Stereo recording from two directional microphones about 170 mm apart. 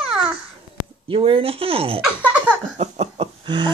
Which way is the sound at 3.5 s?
25° right (ahead or behind).